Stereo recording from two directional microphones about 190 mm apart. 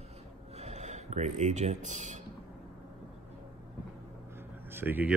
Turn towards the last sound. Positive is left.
turn(degrees=-10)  # may be behind; listen again after turning